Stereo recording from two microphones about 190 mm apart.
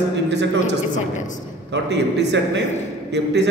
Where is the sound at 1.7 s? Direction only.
65° right (ahead or behind).